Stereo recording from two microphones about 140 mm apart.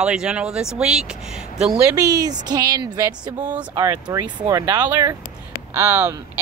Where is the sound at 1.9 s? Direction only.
25° right (ahead or behind).